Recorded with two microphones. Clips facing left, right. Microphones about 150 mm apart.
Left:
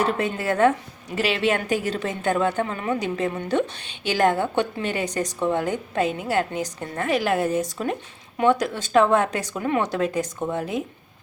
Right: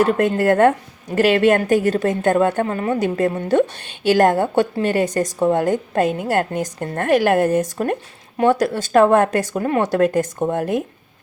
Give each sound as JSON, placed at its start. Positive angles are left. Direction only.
{"t": 0.0, "sound": "a woman's voice", "side_deg": -50}
{"t": 8.4, "sound": "a woman's voice", "side_deg": -40}